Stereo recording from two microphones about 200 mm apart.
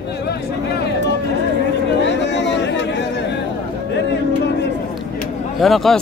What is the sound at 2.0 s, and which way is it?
Chatter, 60° left (ahead or behind).